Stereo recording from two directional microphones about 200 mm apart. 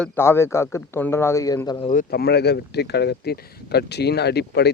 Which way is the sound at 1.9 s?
45° left (ahead or behind).